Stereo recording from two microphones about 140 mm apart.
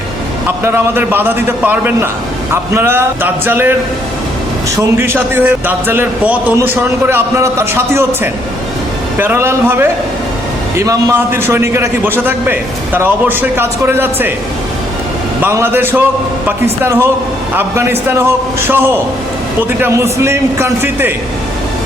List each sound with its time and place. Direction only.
0.6 s a man's voice: 15° right (ahead or behind)
4.8 s a man's voice: 15° right (ahead or behind)
15.4 s a man's voice: 15° right (ahead or behind)